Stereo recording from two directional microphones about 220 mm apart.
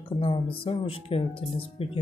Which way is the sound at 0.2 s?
25° left (ahead or behind).